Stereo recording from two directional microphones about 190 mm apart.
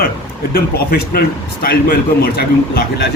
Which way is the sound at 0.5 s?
50° left (ahead or behind).